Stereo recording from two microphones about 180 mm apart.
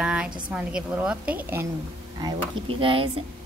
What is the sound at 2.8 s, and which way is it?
Speech, 30° right (ahead or behind).